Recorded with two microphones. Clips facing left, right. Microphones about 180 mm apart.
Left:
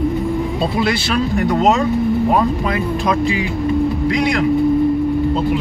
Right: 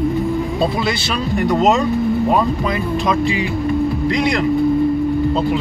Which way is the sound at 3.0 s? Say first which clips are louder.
Even; centre (ahead or behind).